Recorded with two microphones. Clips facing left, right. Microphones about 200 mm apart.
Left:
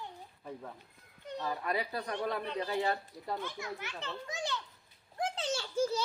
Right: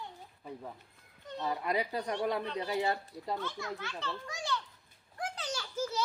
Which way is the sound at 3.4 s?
15° left (ahead or behind).